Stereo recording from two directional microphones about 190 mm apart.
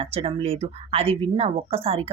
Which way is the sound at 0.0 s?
30° right (ahead or behind).